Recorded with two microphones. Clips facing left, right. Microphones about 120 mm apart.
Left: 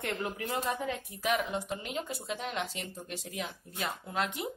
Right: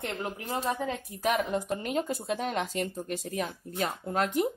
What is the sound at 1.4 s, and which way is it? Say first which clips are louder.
Speech: right 5 dB; 55° right (ahead or behind).